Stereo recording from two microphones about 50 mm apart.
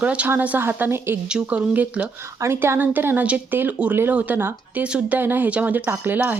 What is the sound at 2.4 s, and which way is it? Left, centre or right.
Speech, right.